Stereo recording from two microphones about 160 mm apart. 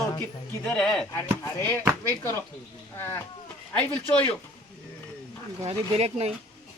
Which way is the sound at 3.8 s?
10° left (ahead or behind).